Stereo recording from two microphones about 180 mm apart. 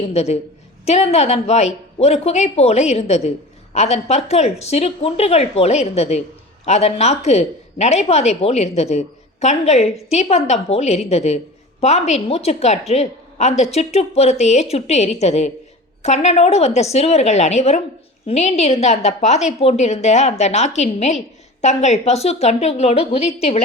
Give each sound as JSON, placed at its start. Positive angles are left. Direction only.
{"t": 0.0, "sound": "a woman's voice", "side_deg": 35}